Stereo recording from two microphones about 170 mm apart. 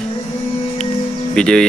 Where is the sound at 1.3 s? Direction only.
5° left (ahead or behind).